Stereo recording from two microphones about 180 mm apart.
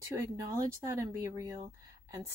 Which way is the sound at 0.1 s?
20° right (ahead or behind).